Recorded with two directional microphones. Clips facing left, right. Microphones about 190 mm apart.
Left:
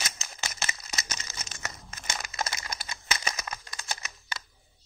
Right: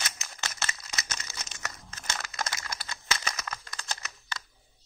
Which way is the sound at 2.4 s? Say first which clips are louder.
Left 1 dB; 20° left (ahead or behind).